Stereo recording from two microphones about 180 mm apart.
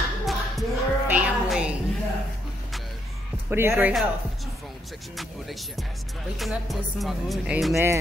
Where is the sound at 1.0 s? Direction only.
5° right (ahead or behind).